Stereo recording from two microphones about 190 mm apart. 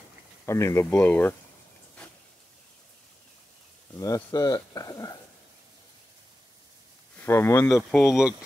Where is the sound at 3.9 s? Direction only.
15° left (ahead or behind).